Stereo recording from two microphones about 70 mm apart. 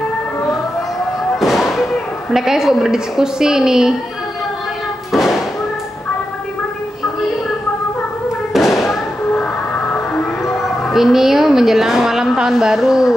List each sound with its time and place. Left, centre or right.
1.4 s fireworks: centre
2.3 s a woman's voice: centre
5.1 s thump: centre
8.5 s thump: centre
9.3 s a sound: left
10.6 s a woman's voice: centre